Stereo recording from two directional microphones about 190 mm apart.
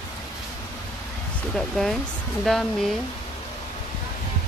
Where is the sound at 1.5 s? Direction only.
Centre (ahead or behind).